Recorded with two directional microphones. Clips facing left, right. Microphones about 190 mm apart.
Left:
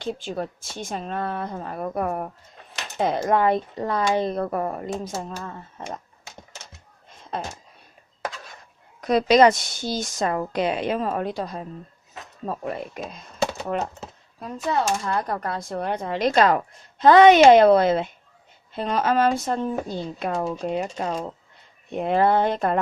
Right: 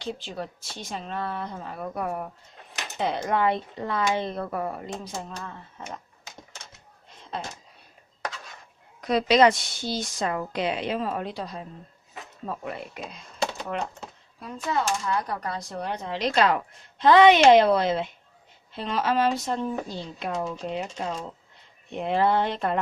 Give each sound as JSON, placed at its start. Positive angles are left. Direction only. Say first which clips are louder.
{"t": 0.0, "sound": "speech", "louder": "left 5 dB", "side_deg": 50}
{"t": 7.3, "sound": "speech", "louder": "left 4 dB", "side_deg": 50}
{"t": 9.0, "sound": "speech", "louder": "left 3 dB", "side_deg": 45}
{"t": 13.4, "sound": "a sound", "louder": "left 4 dB", "side_deg": 0}
{"t": 14.3, "sound": "speech", "louder": "left 3 dB", "side_deg": 40}